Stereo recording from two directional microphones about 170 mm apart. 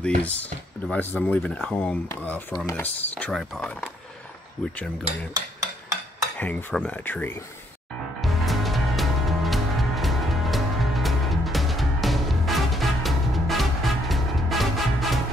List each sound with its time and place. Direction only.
0.2 s speech: 10° left (ahead or behind)
5.1 s cutlery: 35° right (ahead or behind)
6.3 s speech: 10° left (ahead or behind)
8.2 s music: centre (ahead or behind)